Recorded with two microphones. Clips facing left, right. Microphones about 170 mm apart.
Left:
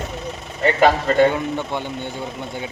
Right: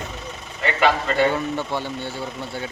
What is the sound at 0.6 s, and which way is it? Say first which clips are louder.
Speech: left 4 dB; 40° left (ahead or behind).